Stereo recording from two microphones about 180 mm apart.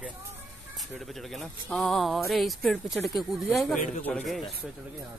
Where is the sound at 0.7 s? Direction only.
Centre (ahead or behind).